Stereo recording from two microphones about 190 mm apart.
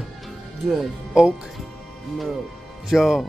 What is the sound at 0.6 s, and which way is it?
Speech, 5° right (ahead or behind).